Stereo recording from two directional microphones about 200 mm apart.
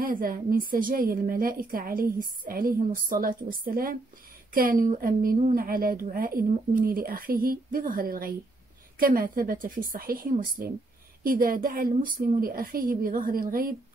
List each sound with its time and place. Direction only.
0.0 s a woman's voice: 45° right (ahead or behind)